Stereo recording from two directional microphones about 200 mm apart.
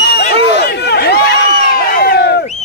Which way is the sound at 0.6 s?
55° left (ahead or behind).